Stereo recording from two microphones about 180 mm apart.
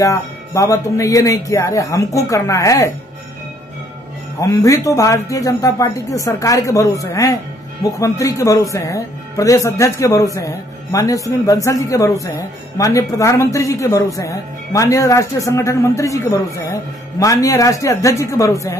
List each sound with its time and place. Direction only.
0.0 s speech: 15° left (ahead or behind)
4.4 s speech: 20° left (ahead or behind)